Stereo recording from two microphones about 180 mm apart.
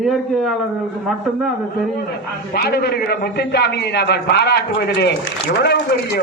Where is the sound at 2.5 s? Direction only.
60° left (ahead or behind).